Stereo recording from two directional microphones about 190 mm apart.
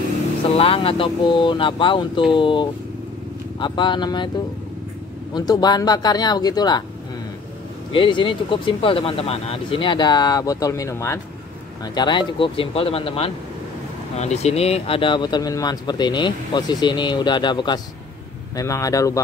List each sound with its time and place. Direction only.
0.5 s speech: 30° left (ahead or behind)
5.3 s speech: 20° left (ahead or behind)
7.9 s speech: 25° left (ahead or behind)